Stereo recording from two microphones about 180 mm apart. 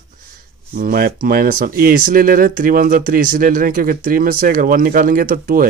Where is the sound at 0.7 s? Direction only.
55° right (ahead or behind).